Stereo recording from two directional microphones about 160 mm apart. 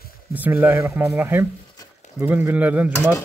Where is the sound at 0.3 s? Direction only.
10° right (ahead or behind).